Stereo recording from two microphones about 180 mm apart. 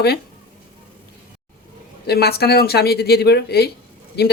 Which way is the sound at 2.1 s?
60° left (ahead or behind).